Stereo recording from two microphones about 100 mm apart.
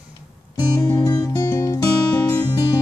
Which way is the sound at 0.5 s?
35° left (ahead or behind).